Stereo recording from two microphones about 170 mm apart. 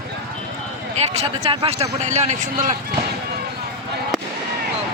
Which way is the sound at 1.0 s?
40° right (ahead or behind).